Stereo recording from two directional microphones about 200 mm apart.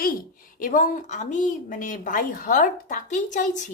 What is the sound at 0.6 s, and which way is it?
A woman's voice, 40° left (ahead or behind).